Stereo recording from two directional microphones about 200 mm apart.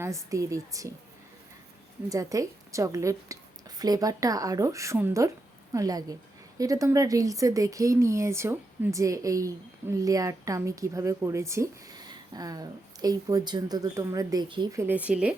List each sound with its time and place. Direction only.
0.0 s a woman's voice: 15° right (ahead or behind)
2.0 s a woman's voice: 15° right (ahead or behind)